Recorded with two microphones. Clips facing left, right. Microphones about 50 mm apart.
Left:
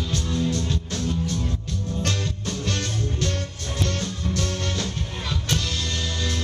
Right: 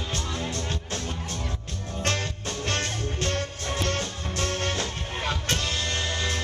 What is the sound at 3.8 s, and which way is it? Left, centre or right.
Music, right.